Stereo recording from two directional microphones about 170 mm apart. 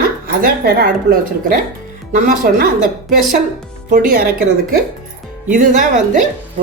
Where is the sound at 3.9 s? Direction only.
50° right (ahead or behind).